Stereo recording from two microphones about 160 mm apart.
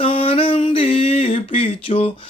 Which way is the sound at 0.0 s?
35° left (ahead or behind).